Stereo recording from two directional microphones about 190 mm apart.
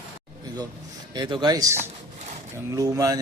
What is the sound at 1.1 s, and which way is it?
A man's voice, 25° right (ahead or behind).